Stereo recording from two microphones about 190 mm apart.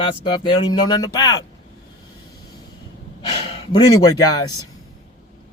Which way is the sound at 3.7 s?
20° left (ahead or behind).